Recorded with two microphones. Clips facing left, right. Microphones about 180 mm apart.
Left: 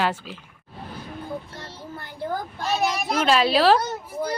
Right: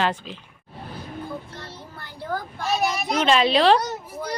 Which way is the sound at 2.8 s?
Centre (ahead or behind).